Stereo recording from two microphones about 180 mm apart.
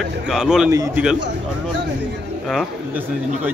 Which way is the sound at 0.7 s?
20° right (ahead or behind).